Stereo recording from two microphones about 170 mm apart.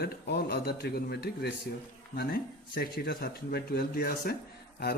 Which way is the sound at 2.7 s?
60° left (ahead or behind).